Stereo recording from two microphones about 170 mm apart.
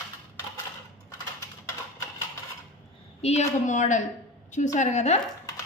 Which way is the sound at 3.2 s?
40° left (ahead or behind).